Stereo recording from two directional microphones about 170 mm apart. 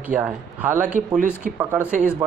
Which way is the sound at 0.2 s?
10° right (ahead or behind).